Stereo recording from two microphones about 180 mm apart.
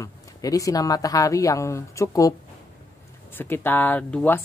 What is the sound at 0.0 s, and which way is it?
Speech, 20° left (ahead or behind).